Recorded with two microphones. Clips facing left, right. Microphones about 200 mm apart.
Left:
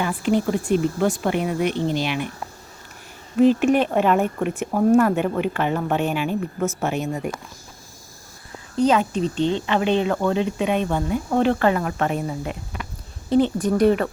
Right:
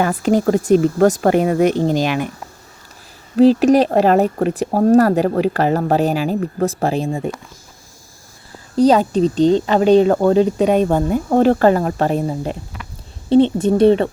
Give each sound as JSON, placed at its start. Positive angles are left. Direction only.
{"t": 0.2, "sound": "speech", "side_deg": -40}
{"t": 3.3, "sound": "speech", "side_deg": -35}
{"t": 8.7, "sound": "speech", "side_deg": -35}